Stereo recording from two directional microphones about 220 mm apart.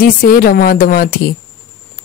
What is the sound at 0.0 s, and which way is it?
Speech, 40° left (ahead or behind).